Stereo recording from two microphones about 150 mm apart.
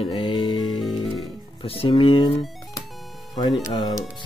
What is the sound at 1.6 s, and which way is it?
Speech, 35° left (ahead or behind).